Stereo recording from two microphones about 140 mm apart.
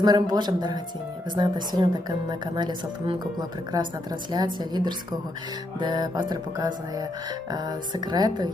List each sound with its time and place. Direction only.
0.0 s music: 30° right (ahead or behind)
3.7 s speech: 30° right (ahead or behind)
4.3 s music: 30° right (ahead or behind)
7.5 s speech: 30° right (ahead or behind)